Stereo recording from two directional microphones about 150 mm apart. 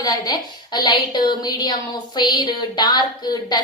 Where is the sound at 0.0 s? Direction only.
25° left (ahead or behind).